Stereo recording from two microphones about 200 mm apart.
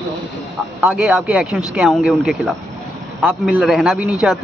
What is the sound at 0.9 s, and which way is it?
Speech, 5° right (ahead or behind).